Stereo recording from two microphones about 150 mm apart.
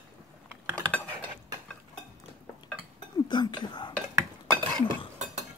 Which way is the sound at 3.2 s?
30° left (ahead or behind).